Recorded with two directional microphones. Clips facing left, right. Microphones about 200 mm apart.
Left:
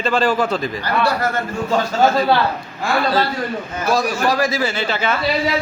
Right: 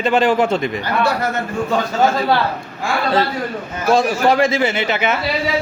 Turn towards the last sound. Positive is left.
turn(degrees=-20)  # may be behind; listen again after turning